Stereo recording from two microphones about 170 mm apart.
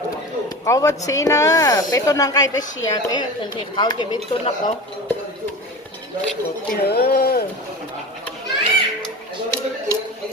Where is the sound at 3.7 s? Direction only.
25° left (ahead or behind).